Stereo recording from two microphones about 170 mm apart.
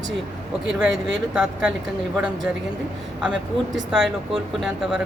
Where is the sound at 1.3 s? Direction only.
5° right (ahead or behind).